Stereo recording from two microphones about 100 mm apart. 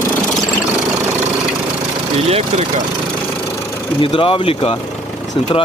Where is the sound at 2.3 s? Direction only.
90° right.